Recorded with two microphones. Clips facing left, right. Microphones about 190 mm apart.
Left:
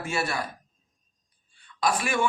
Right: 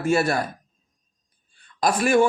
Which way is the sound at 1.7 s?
45° right (ahead or behind).